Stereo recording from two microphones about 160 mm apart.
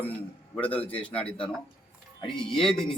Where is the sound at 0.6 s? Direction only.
10° left (ahead or behind).